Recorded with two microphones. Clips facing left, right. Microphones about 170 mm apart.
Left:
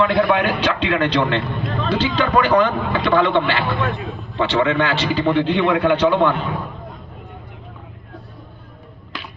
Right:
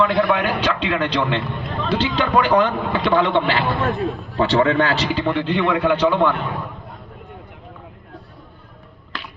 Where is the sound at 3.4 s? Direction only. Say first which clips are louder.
Right 1 dB; 35° right (ahead or behind).